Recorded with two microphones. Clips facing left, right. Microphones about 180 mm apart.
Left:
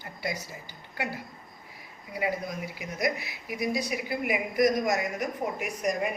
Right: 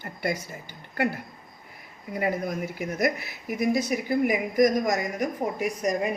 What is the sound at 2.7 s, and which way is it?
A woman's voice, 50° right (ahead or behind).